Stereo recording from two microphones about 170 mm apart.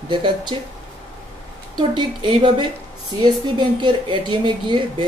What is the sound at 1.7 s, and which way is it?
Speech, 25° right (ahead or behind).